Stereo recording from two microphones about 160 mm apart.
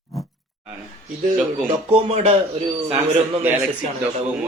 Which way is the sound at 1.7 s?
40° right (ahead or behind).